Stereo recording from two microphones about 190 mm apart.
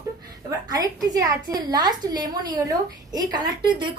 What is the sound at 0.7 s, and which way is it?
A woman's voice, 20° right (ahead or behind).